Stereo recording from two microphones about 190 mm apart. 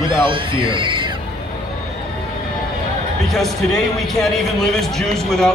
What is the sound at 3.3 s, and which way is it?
A man's voice, centre (ahead or behind).